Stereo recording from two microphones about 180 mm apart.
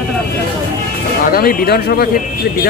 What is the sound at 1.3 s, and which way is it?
Speech, 55° left (ahead or behind).